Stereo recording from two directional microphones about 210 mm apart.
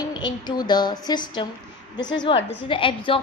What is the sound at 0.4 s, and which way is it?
A woman's voice, 20° left (ahead or behind).